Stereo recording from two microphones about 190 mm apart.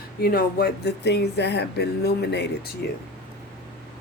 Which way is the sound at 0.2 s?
55° left (ahead or behind).